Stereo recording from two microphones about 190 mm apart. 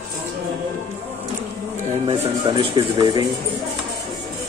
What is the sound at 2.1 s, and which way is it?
Speech, 25° right (ahead or behind).